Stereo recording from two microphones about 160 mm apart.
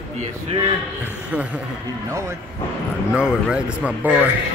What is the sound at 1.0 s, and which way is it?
Speech, 10° right (ahead or behind).